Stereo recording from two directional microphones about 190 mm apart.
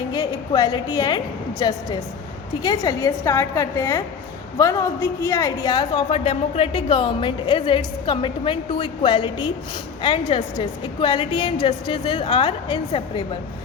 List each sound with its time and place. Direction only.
0.1 s a woman's voice: 20° left (ahead or behind)